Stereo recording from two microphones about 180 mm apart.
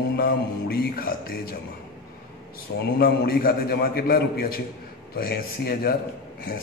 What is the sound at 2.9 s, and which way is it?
A man's voice, 55° left (ahead or behind).